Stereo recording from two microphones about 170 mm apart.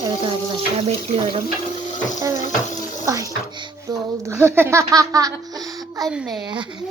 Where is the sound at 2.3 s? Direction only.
45° left (ahead or behind).